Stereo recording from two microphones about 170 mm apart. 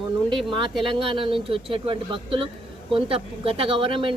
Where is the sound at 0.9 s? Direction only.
30° right (ahead or behind).